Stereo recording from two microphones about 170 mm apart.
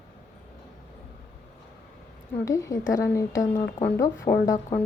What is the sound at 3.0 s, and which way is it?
Speech, 15° left (ahead or behind).